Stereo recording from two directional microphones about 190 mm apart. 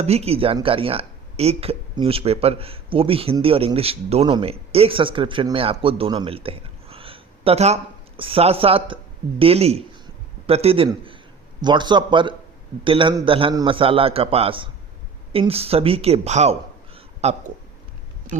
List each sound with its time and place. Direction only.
0.0 s a man's voice: 35° right (ahead or behind)